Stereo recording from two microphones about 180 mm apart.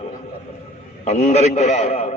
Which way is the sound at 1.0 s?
40° left (ahead or behind).